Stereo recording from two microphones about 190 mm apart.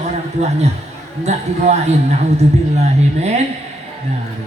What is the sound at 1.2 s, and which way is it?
Speech, 35° right (ahead or behind).